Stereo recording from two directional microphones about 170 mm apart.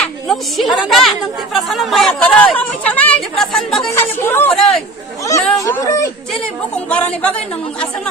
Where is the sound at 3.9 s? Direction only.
15° left (ahead or behind).